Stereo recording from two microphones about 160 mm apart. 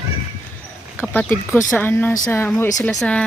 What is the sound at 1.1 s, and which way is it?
Speech, 10° left (ahead or behind).